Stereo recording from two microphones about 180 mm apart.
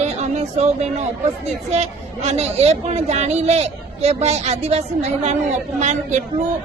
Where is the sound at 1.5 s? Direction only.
40° right (ahead or behind).